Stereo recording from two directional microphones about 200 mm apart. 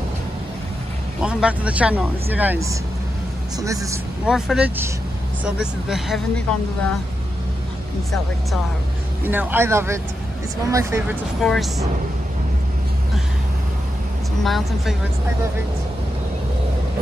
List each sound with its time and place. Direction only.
1.2 s speech: 5° right (ahead or behind)
4.3 s speech: 5° right (ahead or behind)
9.2 s speech: 10° right (ahead or behind)
11.4 s speech: centre (ahead or behind)
14.4 s speech: centre (ahead or behind)